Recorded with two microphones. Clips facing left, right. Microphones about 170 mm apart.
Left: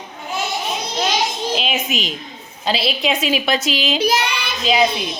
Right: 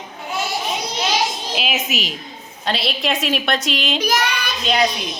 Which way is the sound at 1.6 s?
5° right (ahead or behind).